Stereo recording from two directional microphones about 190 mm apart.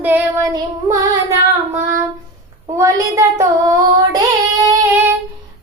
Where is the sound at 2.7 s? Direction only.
15° right (ahead or behind).